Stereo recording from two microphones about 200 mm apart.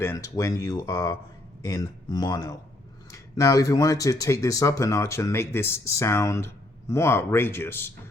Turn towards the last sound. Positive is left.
turn(degrees=10)  # may be behind; listen again after turning